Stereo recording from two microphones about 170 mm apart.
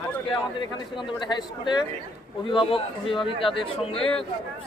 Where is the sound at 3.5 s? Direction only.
30° left (ahead or behind).